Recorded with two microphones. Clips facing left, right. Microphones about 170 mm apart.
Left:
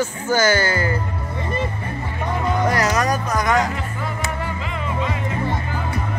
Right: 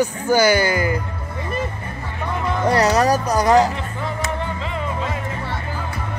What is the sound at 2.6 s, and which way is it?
Speech, 30° right (ahead or behind).